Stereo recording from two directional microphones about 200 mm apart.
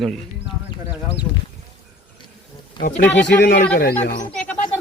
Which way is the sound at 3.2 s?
60° left (ahead or behind).